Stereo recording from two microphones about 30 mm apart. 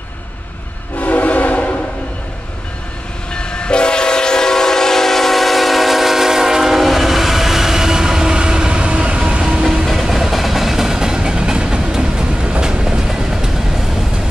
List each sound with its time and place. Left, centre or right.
0.9 s train: left
3.3 s train: left; by 9.4 s right
9.4 s train: right
9.8 s train: centre; by 12.3 s right
12.4 s train: right
13.1 s train: centre